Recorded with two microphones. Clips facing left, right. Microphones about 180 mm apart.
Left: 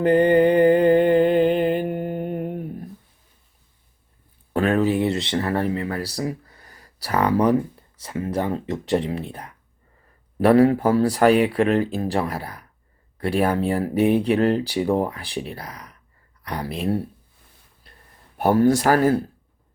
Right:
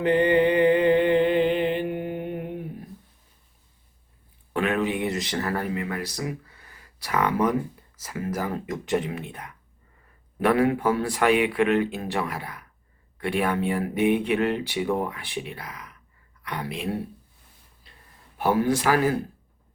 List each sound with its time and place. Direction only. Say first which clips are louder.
0.0 s a sound: left 4 dB; 45° left (ahead or behind)
4.5 s speech: left 5 dB; 35° left (ahead or behind)
18.3 s speech: left 5 dB; 45° left (ahead or behind)